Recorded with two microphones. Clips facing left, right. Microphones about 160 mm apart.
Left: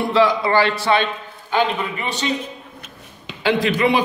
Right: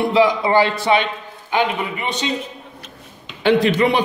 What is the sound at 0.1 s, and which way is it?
A man's voice, 20° right (ahead or behind).